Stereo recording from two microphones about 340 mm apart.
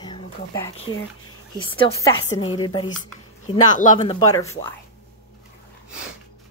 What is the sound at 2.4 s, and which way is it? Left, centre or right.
Speech, left.